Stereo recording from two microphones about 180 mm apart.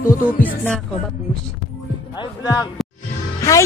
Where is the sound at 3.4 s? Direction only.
15° left (ahead or behind).